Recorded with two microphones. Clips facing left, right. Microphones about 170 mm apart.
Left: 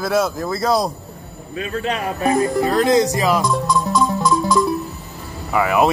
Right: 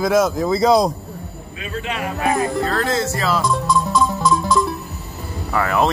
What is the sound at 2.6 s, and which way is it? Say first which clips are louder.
Speech: left 5 dB; 15° left (ahead or behind).